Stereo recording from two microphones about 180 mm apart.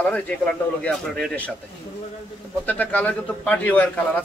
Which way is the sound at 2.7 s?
10° left (ahead or behind).